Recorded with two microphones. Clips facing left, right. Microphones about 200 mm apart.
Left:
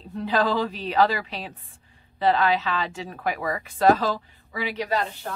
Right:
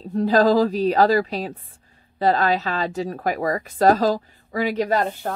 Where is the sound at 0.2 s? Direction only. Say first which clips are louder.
Right 7 dB; 40° right (ahead or behind).